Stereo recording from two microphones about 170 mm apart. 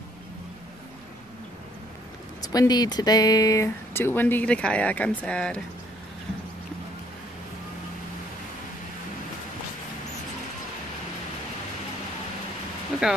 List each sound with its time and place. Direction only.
2.4 s speech: 20° left (ahead or behind); by 5.6 s 5° left (ahead or behind)